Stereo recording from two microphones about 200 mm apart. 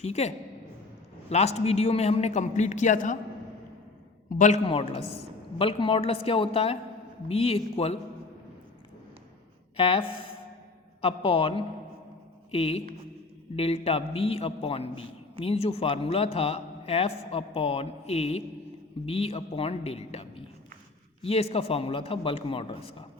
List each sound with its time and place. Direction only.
0.0 s a man's voice: 35° left (ahead or behind)
4.3 s a man's voice: 40° left (ahead or behind)
9.7 s a man's voice: 25° left (ahead or behind)